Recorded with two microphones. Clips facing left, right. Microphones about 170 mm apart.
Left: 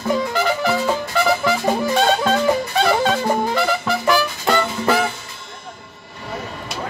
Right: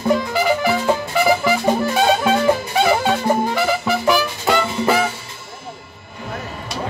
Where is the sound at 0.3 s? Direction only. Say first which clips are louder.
Right 2 dB; 5° right (ahead or behind).